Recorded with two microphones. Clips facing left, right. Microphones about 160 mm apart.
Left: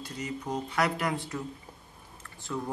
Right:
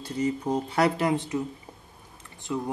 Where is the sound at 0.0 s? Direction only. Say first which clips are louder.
Right 9 dB; 30° right (ahead or behind).